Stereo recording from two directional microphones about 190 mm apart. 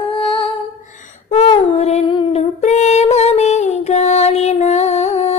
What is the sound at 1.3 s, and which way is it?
Child singing, 35° left (ahead or behind).